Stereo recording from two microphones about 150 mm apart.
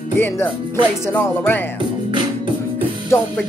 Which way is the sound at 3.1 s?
20° left (ahead or behind).